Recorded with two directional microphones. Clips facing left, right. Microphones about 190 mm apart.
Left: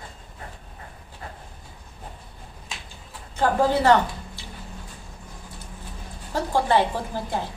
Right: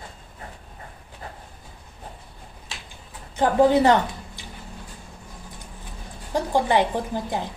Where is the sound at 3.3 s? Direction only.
15° right (ahead or behind).